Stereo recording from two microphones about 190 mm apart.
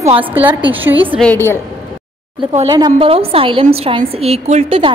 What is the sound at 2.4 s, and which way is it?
Speech, 35° right (ahead or behind).